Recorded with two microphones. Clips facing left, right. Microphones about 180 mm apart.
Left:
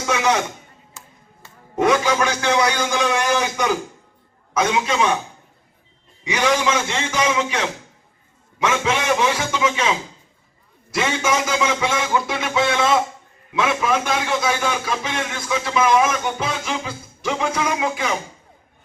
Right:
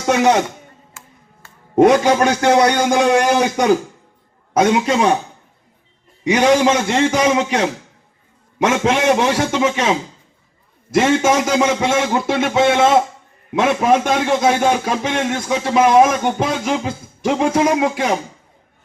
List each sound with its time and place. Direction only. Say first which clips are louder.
0.1 s a man's voice: right 6 dB; 40° right (ahead or behind)
1.8 s a man's voice: right 6 dB; 40° right (ahead or behind)
2.2 s speech: right 6 dB; 55° right (ahead or behind)
3.0 s a man's voice: right 7 dB; 40° right (ahead or behind)
3.2 s speech: right 5 dB; 60° right (ahead or behind)
4.9 s a man's voice: right 5 dB; 40° right (ahead or behind)
6.2 s a man's voice: right 7 dB; 55° right (ahead or behind)
8.7 s a man's voice: right 6 dB; 55° right (ahead or behind)
10.9 s a man's voice: right 7 dB; 50° right (ahead or behind)